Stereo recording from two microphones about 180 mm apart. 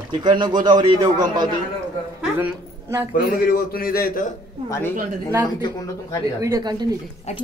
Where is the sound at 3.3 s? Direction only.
55° left (ahead or behind).